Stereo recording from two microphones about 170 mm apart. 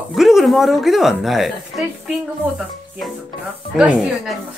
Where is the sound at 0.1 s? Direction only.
Centre (ahead or behind).